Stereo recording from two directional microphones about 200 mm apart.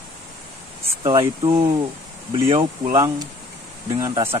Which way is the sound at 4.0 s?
15° right (ahead or behind).